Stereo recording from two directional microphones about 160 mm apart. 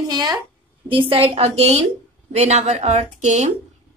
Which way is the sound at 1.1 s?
35° right (ahead or behind).